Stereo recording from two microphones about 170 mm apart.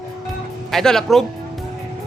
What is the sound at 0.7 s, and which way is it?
Speech, 5° left (ahead or behind).